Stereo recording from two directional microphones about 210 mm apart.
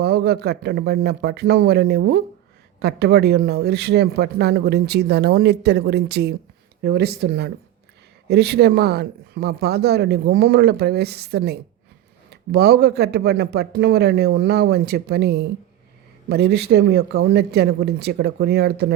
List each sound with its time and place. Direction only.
0.0 s speech: 50° right (ahead or behind)